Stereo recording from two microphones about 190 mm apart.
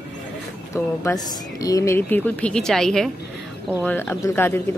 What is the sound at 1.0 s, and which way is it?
A woman's voice, 20° left (ahead or behind).